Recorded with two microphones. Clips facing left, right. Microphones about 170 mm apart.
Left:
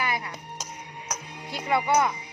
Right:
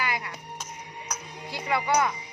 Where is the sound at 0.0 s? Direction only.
25° left (ahead or behind).